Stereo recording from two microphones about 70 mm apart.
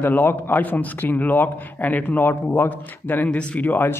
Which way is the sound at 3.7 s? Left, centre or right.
Left.